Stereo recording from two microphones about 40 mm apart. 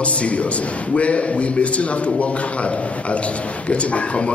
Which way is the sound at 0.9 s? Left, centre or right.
Left.